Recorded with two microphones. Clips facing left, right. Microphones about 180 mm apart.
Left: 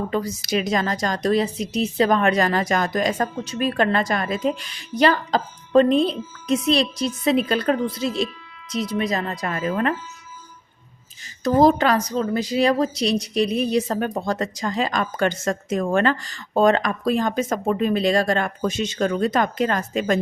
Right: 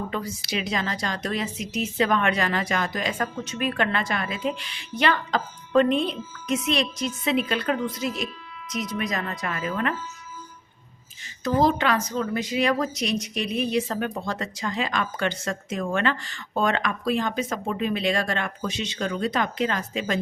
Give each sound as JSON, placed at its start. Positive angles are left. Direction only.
{"t": 0.1, "sound": "a woman's voice", "side_deg": 40}
{"t": 11.4, "sound": "a woman's voice", "side_deg": 40}